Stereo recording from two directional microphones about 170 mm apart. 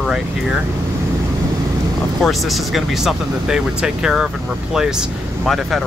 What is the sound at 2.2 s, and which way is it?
Speech, centre (ahead or behind).